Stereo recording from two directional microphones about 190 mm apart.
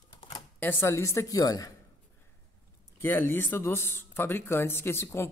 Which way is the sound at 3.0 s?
10° left (ahead or behind).